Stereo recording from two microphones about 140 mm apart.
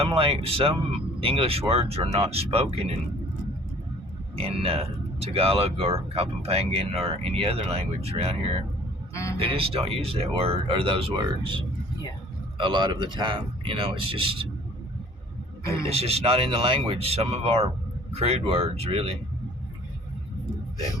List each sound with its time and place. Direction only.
0.0 s speech: 40° right (ahead or behind)
4.4 s speech: 45° right (ahead or behind)
9.1 s speech: 20° left (ahead or behind)
9.4 s speech: 40° right (ahead or behind)
15.9 s speech: 45° right (ahead or behind)